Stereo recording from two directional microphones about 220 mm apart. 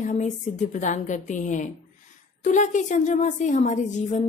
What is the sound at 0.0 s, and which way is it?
A woman's voice, 35° left (ahead or behind).